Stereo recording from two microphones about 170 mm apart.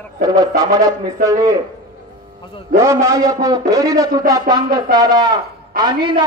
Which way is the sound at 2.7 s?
15° right (ahead or behind).